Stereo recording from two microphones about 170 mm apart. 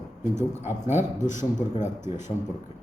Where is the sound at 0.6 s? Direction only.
40° left (ahead or behind).